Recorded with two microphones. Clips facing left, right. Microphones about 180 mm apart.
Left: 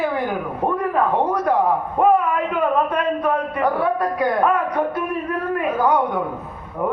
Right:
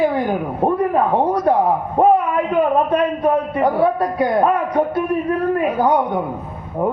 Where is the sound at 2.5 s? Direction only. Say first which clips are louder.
Right 5 dB; 30° right (ahead or behind).